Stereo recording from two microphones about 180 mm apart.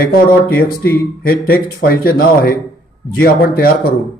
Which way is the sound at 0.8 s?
10° left (ahead or behind).